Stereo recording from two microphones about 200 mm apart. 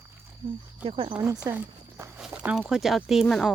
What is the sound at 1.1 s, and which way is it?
Speech, 10° right (ahead or behind).